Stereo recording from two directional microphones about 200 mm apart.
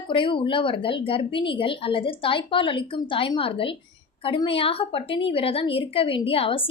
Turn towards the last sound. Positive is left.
turn(degrees=30)  # may be behind; listen again after turning